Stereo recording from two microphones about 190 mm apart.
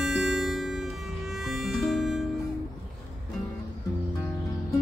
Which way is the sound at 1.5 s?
Centre (ahead or behind).